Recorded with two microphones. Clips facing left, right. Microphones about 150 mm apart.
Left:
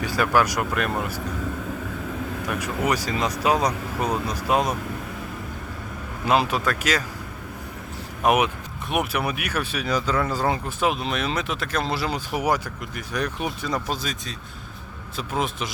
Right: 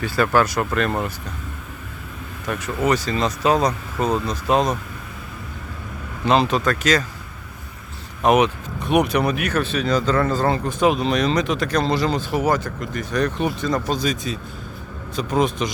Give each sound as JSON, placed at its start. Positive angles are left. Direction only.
{"t": 0.0, "sound": "speech", "side_deg": 15}
{"t": 2.5, "sound": "speech", "side_deg": 10}
{"t": 6.2, "sound": "speech", "side_deg": 5}
{"t": 8.2, "sound": "speech", "side_deg": 10}